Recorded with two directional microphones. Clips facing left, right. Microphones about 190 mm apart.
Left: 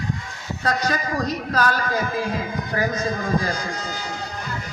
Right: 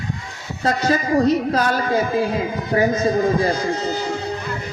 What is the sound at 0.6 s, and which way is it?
A man's voice, 25° right (ahead or behind).